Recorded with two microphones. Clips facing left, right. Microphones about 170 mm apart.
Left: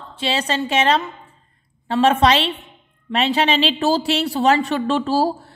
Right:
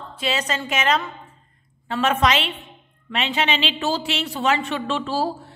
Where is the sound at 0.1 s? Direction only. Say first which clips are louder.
Left 3 dB; 30° left (ahead or behind).